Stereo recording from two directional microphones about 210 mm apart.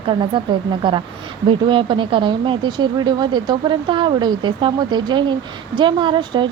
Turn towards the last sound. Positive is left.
turn(degrees=-20)  # may be behind; listen again after turning